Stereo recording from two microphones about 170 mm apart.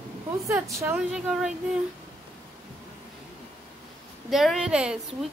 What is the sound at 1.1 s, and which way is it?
Speech, 5° right (ahead or behind).